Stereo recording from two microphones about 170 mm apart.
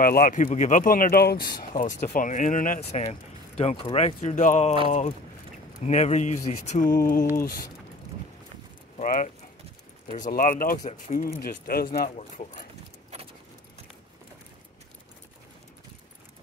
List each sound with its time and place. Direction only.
0.0 s speech: 55° left (ahead or behind)
5.9 s speech: 45° left (ahead or behind)
8.9 s speech: 50° left (ahead or behind)
10.9 s speech: 45° left (ahead or behind)
11.3 s speech: 60° left (ahead or behind)
12.2 s speech: 45° left (ahead or behind)